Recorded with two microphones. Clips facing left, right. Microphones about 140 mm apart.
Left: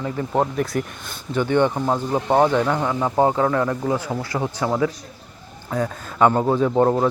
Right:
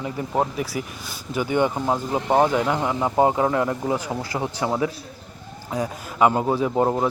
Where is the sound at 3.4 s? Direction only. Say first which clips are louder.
Left 1 dB; 20° right (ahead or behind).